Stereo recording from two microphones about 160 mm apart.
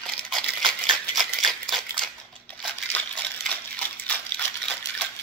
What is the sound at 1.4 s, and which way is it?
Crumpling, centre (ahead or behind).